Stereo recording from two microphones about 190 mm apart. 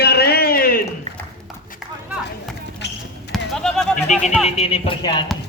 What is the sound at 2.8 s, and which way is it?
Basketball bounce, 65° left (ahead or behind).